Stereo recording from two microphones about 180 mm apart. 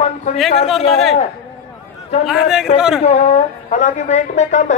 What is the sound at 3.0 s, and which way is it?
A man's voice, 35° left (ahead or behind).